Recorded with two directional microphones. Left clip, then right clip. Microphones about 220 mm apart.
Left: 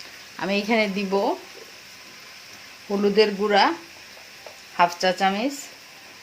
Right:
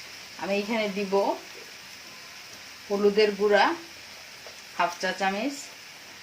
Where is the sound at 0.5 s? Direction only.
50° left (ahead or behind).